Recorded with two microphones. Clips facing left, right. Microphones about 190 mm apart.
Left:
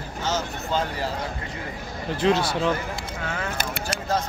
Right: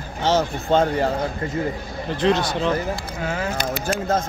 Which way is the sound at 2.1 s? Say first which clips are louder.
Right 2 dB; 5° left (ahead or behind).